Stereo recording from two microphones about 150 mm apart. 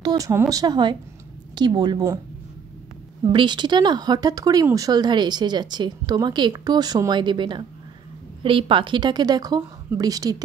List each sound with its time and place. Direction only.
0.0 s speech: 25° right (ahead or behind)
3.3 s speech: 30° right (ahead or behind)